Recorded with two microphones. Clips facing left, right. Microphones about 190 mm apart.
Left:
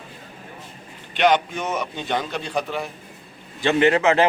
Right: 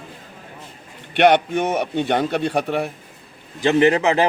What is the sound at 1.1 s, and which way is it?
A man's voice, 60° right (ahead or behind).